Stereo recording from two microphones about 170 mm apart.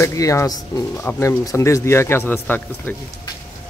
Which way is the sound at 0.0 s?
20° left (ahead or behind).